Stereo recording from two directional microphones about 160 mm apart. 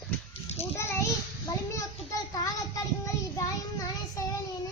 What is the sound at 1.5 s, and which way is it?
Child singing, 20° left (ahead or behind).